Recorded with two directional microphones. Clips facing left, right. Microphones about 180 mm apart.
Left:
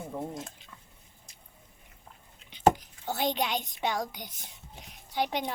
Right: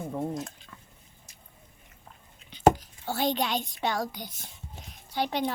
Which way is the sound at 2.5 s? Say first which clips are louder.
Right 2 dB; 20° left (ahead or behind).